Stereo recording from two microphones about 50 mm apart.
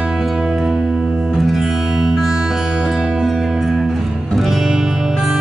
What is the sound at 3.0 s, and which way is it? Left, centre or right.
Music, centre.